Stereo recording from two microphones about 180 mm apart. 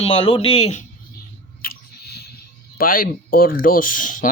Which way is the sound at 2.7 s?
50° left (ahead or behind).